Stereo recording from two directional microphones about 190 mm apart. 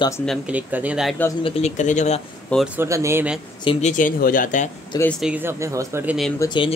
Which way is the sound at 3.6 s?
40° left (ahead or behind).